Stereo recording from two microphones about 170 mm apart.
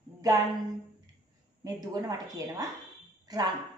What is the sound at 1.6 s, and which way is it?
Speech, 20° right (ahead or behind).